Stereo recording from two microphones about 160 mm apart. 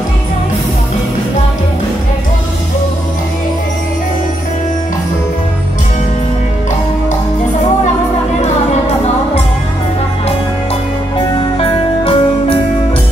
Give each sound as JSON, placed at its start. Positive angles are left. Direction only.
{"t": 11.1, "sound": "music", "side_deg": 35}